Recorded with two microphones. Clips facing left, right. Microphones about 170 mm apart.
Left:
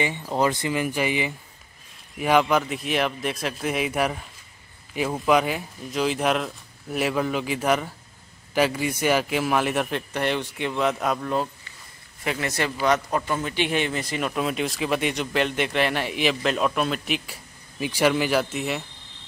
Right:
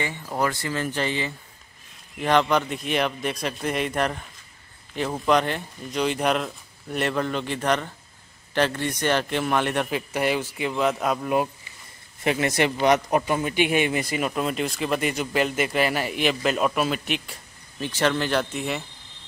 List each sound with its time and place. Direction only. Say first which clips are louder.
0.0 s a man's voice: left 3 dB; 20° left (ahead or behind); by 11.2 s centre (ahead or behind)
11.2 s a man's voice: right 2 dB; 15° right (ahead or behind); by 18.9 s 5° left (ahead or behind)